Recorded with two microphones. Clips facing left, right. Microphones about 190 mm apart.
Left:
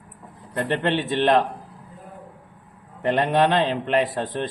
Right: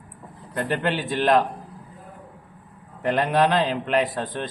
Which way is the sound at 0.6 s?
30° left (ahead or behind).